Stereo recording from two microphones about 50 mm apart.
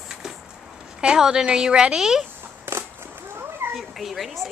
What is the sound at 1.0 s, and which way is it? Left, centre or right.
A woman's voice, centre.